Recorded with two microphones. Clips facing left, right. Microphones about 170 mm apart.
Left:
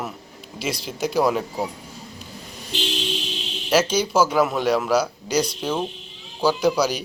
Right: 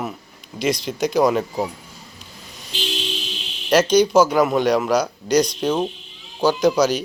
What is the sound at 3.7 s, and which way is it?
A man's voice, 5° left (ahead or behind).